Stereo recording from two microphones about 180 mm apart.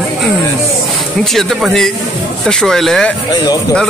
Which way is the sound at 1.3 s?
Centre (ahead or behind).